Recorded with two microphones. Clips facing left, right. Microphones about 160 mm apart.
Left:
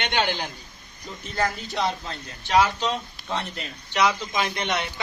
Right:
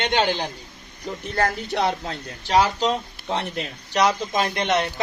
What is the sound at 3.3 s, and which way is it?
Speech, 60° right (ahead or behind).